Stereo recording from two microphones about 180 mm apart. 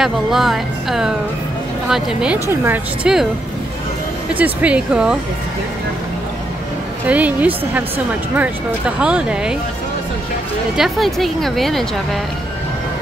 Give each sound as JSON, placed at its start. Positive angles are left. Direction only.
{"t": 0.0, "sound": "a woman's voice", "side_deg": 0}
{"t": 2.4, "sound": "speech", "side_deg": -15}
{"t": 4.3, "sound": "speech", "side_deg": -10}
{"t": 7.1, "sound": "a woman's voice", "side_deg": -10}
{"t": 10.8, "sound": "a woman's voice", "side_deg": 0}